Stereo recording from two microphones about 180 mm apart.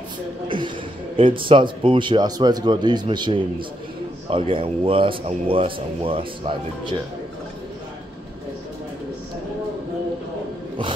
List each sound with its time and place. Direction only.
0.5 s a man's voice: 25° right (ahead or behind)